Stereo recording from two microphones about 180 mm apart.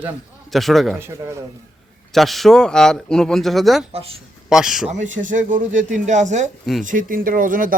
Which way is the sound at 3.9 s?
30° right (ahead or behind).